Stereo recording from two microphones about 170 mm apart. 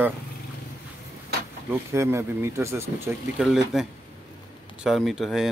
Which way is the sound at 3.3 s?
Centre (ahead or behind).